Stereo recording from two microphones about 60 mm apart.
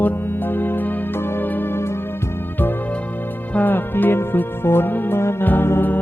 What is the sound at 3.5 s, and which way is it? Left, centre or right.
Music, left.